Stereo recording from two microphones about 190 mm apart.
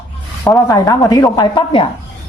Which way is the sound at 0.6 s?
20° left (ahead or behind).